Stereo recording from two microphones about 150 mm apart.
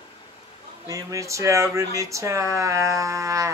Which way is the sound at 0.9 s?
20° right (ahead or behind).